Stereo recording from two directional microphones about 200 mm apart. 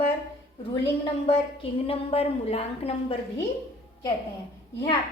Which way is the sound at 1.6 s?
30° left (ahead or behind).